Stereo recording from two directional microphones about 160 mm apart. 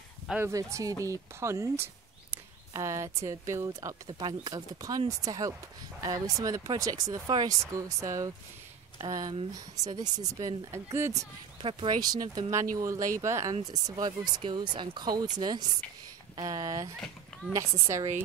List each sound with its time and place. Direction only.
0.4 s speech: 20° right (ahead or behind)
11.6 s speech: 30° right (ahead or behind)